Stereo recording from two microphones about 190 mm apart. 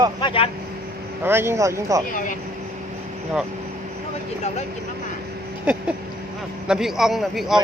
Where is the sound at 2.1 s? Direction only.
45° left (ahead or behind).